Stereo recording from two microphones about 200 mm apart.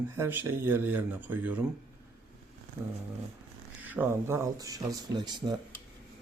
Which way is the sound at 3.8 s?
10° right (ahead or behind).